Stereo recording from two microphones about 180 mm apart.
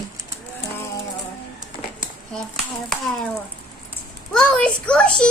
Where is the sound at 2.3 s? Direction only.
Centre (ahead or behind).